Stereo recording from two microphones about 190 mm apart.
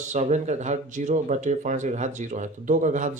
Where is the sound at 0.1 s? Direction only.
35° right (ahead or behind).